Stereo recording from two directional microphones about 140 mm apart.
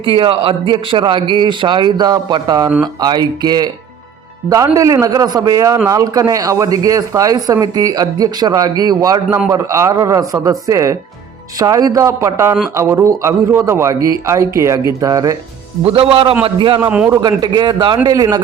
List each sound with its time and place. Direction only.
0.0 s a man's voice: 40° right (ahead or behind)
15.8 s a man's voice: 45° right (ahead or behind)
16.8 s a man's voice: 15° right (ahead or behind)
17.2 s a man's voice: 30° right (ahead or behind)